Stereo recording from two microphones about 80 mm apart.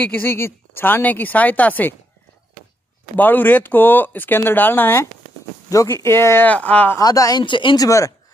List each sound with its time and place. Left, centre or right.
0.0 s speech: left
3.2 s speech: left
5.7 s speech: left
6.0 s speech: left
6.5 s speech: centre
7.0 s speech: left
7.4 s speech: left
7.7 s speech: left